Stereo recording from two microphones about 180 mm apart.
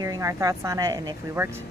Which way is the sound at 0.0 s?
20° right (ahead or behind).